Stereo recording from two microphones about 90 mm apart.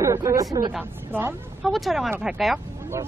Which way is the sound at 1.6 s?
Centre (ahead or behind).